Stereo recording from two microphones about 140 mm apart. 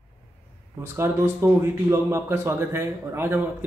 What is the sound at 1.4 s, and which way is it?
A man's voice, 20° right (ahead or behind).